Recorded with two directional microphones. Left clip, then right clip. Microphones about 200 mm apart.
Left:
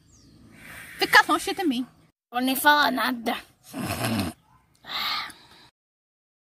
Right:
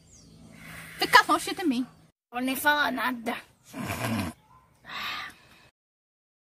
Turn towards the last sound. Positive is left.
turn(degrees=30)  # may be behind; listen again after turning